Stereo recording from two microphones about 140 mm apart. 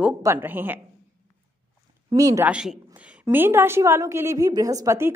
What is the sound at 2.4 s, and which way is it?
A woman's voice, 5° right (ahead or behind).